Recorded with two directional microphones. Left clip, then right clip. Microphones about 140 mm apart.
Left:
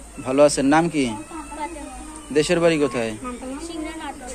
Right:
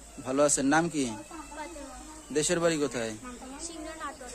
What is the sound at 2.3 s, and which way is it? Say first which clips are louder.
Speech: left 9 dB; 30° right (ahead or behind).